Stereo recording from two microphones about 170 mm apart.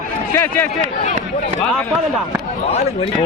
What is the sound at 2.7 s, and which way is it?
Speech, 35° left (ahead or behind).